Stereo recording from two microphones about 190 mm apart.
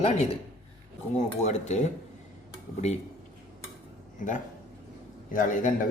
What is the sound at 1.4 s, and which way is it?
Speech, 35° left (ahead or behind).